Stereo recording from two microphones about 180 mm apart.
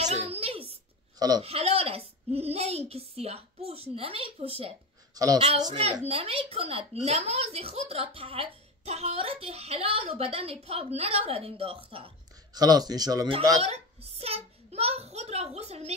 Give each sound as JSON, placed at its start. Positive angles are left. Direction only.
{"t": 0.0, "sound": "a sound", "side_deg": -35}
{"t": 1.4, "sound": "a woman's voice", "side_deg": -35}
{"t": 5.1, "sound": "a woman's voice", "side_deg": -20}
{"t": 13.6, "sound": "a child's voice", "side_deg": -35}